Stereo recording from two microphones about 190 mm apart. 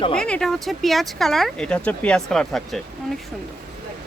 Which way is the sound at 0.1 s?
5° left (ahead or behind).